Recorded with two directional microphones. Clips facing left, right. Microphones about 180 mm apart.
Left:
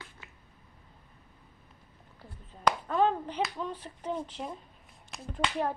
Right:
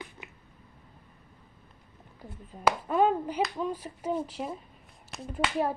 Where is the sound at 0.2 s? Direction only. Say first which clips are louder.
Right 5 dB; 15° right (ahead or behind).